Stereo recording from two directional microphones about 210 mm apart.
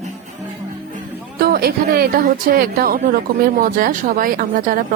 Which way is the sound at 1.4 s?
45° right (ahead or behind).